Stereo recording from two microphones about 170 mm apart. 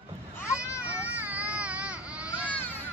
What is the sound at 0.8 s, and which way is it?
Baby cry, 10° right (ahead or behind).